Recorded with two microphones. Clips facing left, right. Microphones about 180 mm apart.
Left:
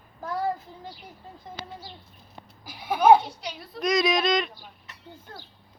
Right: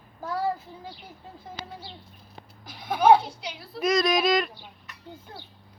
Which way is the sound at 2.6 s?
10° left (ahead or behind).